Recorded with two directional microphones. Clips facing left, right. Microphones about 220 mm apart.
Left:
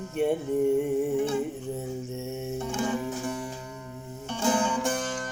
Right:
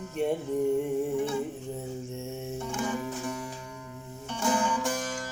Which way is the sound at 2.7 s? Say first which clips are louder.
Left 3 dB; 25° left (ahead or behind).